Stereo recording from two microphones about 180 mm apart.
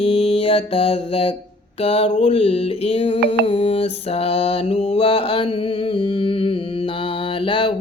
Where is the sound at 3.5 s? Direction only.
35° left (ahead or behind).